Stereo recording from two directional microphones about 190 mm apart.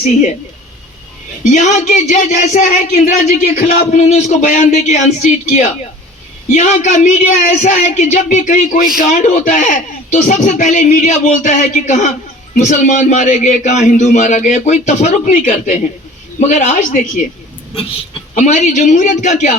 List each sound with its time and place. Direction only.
0.0 s speech: 40° left (ahead or behind)
1.5 s speech: 40° left (ahead or behind)
18.3 s speech: 40° left (ahead or behind)